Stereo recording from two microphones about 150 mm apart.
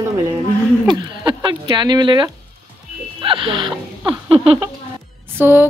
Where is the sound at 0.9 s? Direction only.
30° right (ahead or behind).